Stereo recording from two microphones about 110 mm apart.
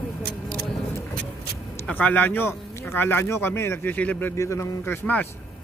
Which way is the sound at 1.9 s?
15° left (ahead or behind).